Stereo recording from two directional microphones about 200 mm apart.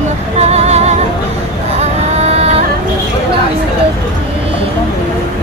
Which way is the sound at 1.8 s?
30° right (ahead or behind).